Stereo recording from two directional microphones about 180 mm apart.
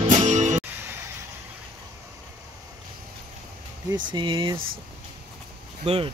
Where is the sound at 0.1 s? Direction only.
45° right (ahead or behind).